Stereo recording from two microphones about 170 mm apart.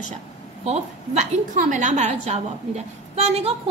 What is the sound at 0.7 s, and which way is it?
A woman's voice, 45° right (ahead or behind).